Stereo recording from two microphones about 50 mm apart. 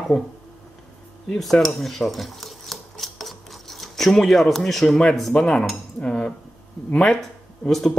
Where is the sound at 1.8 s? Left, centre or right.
Centre.